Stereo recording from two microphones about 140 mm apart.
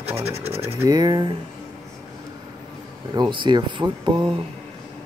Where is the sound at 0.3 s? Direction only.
45° right (ahead or behind).